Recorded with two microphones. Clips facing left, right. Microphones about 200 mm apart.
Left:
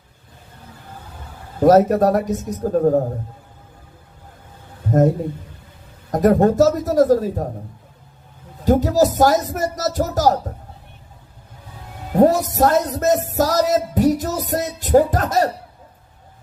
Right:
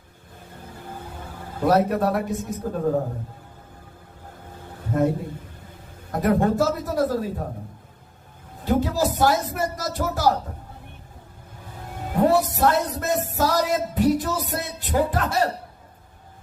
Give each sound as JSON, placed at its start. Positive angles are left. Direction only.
{"t": 1.6, "sound": "music", "side_deg": 40}
{"t": 6.1, "sound": "music", "side_deg": 40}
{"t": 8.6, "sound": "music", "side_deg": 40}
{"t": 12.2, "sound": "music", "side_deg": 40}